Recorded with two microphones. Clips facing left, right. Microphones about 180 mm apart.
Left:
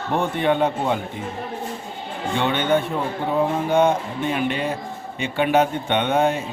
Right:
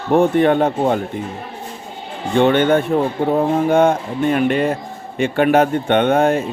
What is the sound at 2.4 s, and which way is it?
A man's voice, 50° right (ahead or behind).